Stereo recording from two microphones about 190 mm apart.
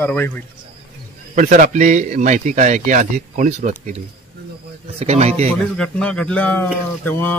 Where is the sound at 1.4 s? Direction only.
40° right (ahead or behind).